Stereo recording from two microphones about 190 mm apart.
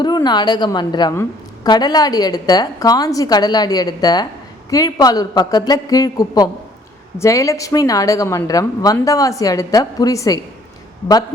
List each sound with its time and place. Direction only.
0.0 s a woman's voice: 20° left (ahead or behind)